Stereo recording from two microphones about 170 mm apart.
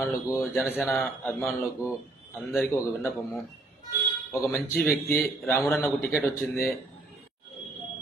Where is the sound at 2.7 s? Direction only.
15° left (ahead or behind).